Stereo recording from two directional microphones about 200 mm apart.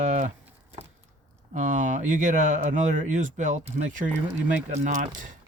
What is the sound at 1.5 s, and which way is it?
Speech, 40° right (ahead or behind).